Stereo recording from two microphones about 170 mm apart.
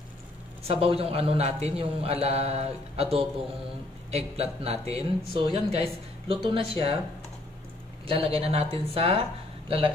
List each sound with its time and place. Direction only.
0.7 s a man's voice: 35° right (ahead or behind)
8.1 s a man's voice: 35° right (ahead or behind)